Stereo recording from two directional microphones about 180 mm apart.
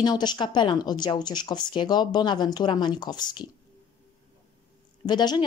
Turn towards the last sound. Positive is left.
turn(degrees=25)  # may be behind; listen again after turning